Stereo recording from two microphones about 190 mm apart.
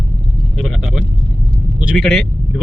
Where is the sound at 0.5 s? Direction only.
Centre (ahead or behind).